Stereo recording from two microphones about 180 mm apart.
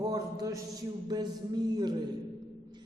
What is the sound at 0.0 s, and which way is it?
A man's voice, 20° right (ahead or behind).